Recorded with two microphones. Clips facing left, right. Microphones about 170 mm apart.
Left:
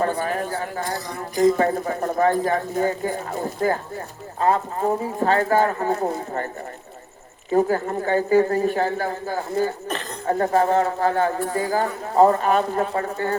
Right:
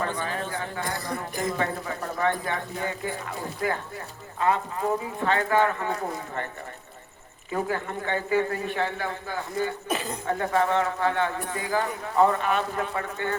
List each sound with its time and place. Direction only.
0.2 s a man's voice: 45° left (ahead or behind)
7.5 s speech: 40° left (ahead or behind)
9.9 s speech: 10° right (ahead or behind)
10.2 s speech: 40° left (ahead or behind)